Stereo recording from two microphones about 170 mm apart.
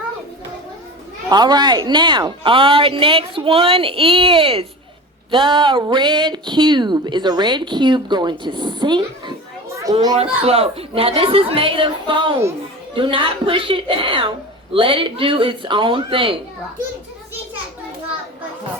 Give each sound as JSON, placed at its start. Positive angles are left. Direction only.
{"t": 1.3, "sound": "speech", "side_deg": -25}